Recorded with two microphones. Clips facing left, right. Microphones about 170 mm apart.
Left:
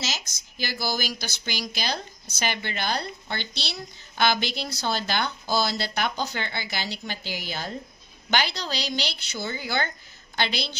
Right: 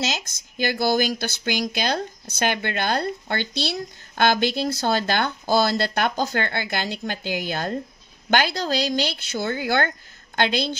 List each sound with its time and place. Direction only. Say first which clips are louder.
0.2 s speech: right 9 dB; 55° right (ahead or behind)